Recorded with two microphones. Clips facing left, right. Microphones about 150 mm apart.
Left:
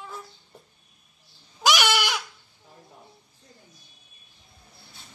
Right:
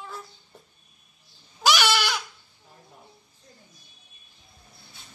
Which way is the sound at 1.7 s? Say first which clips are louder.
Even; 15° left (ahead or behind).